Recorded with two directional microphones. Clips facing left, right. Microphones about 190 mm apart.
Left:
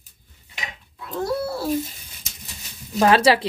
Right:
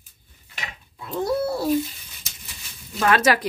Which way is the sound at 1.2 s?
20° right (ahead or behind).